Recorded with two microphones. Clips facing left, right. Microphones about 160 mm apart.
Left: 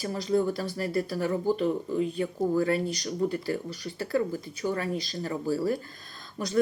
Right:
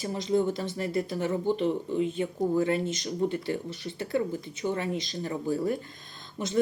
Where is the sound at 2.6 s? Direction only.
20° right (ahead or behind).